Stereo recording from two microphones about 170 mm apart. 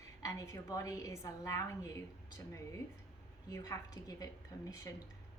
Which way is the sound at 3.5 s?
20° left (ahead or behind).